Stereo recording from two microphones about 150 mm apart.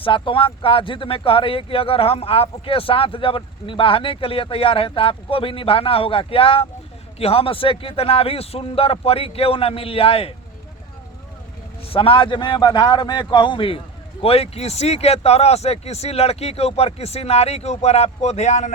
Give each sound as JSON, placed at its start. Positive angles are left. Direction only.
{"t": 0.0, "sound": "speech", "side_deg": 35}
{"t": 11.8, "sound": "speech", "side_deg": 40}